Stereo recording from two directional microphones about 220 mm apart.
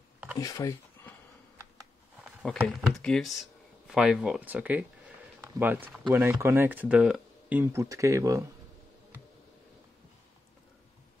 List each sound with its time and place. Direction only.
0.4 s speech: 15° left (ahead or behind)
2.2 s speech: centre (ahead or behind)